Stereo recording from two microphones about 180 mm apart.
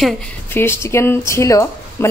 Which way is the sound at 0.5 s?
15° left (ahead or behind).